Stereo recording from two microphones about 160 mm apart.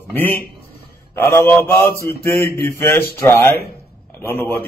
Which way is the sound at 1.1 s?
15° left (ahead or behind).